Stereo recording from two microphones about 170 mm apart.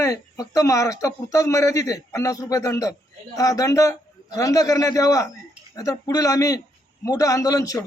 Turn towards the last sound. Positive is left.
turn(degrees=20)  # may be behind; listen again after turning